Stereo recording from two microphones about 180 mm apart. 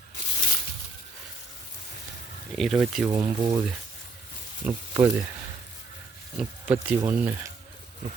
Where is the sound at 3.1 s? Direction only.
20° right (ahead or behind).